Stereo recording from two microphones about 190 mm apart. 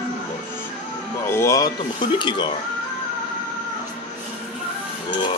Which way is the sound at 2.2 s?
25° left (ahead or behind).